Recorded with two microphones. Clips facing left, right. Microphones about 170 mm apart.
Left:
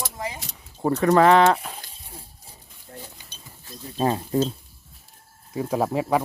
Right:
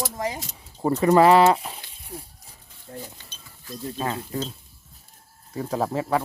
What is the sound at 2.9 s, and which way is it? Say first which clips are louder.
Cutlery: right 4 dB; 25° right (ahead or behind).